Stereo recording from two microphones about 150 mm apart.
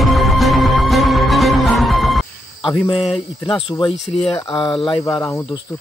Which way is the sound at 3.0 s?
Centre (ahead or behind).